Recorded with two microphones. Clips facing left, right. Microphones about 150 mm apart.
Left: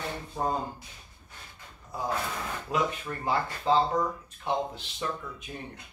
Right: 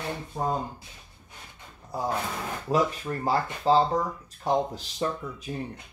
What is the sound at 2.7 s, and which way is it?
Speech, 35° right (ahead or behind).